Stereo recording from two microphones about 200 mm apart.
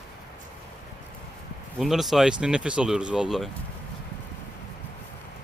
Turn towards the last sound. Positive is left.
turn(degrees=0)  # may be behind; listen again after turning